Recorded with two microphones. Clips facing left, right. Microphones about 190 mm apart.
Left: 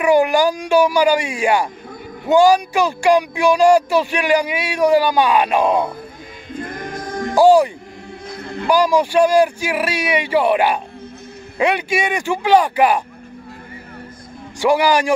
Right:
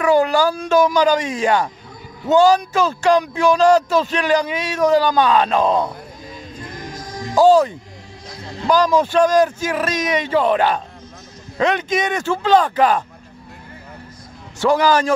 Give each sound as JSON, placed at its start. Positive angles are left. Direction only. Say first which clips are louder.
{"t": 0.0, "sound": "speech", "louder": "left 1 dB", "side_deg": 15}
{"t": 6.5, "sound": "choir", "louder": "left 8 dB", "side_deg": 55}
{"t": 7.3, "sound": "music", "louder": "left 1 dB", "side_deg": 10}
{"t": 8.3, "sound": "music", "louder": "left 4 dB", "side_deg": 55}
{"t": 8.6, "sound": "speech", "louder": "even", "side_deg": 10}
{"t": 14.6, "sound": "speech", "louder": "even", "side_deg": 10}